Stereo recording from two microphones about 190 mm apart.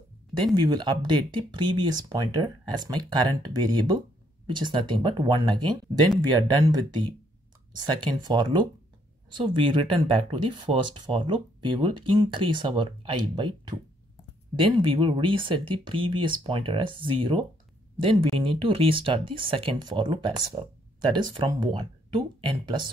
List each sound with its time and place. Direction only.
0.6 s speech: 25° right (ahead or behind)
7.8 s speech: 25° right (ahead or behind)